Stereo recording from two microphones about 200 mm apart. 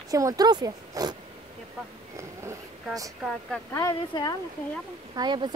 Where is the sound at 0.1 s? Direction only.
15° right (ahead or behind).